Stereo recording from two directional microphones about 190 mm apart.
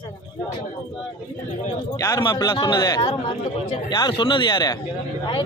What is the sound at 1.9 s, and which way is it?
A man's voice, 20° left (ahead or behind).